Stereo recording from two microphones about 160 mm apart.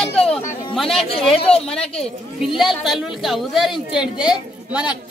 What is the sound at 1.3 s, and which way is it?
Speech, 40° left (ahead or behind).